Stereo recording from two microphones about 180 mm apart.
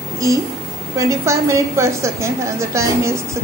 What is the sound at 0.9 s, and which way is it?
A woman's voice, 15° right (ahead or behind).